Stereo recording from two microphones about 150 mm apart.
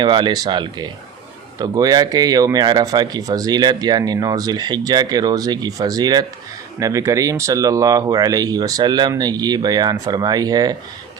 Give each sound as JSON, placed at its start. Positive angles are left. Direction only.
{"t": 0.0, "sound": "speech", "side_deg": -30}